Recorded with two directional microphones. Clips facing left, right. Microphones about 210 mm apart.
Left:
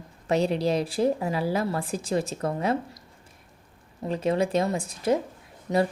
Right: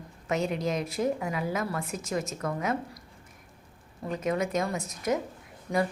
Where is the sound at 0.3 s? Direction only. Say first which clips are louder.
Left 5 dB; 35° left (ahead or behind).